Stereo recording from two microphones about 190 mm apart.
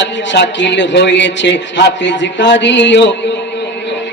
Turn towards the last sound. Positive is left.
turn(degrees=70)  # may be behind; listen again after turning